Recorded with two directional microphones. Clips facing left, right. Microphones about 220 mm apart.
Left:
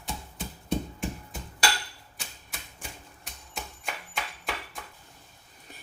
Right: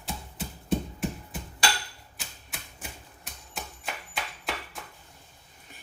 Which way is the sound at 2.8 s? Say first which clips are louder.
Even; centre (ahead or behind).